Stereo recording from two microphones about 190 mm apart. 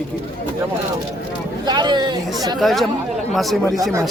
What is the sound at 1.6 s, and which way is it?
Speech, 20° right (ahead or behind).